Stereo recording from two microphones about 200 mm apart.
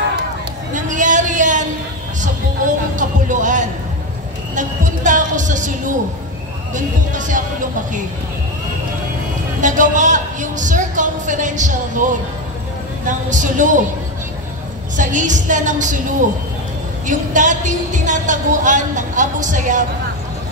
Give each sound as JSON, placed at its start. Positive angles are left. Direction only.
{"t": 0.7, "sound": "a sound", "side_deg": -40}
{"t": 4.6, "sound": "a woman's voice", "side_deg": -40}
{"t": 9.6, "sound": "a man's voice", "side_deg": -40}
{"t": 15.0, "sound": "a woman's voice", "side_deg": -40}
{"t": 17.0, "sound": "a woman's voice", "side_deg": -40}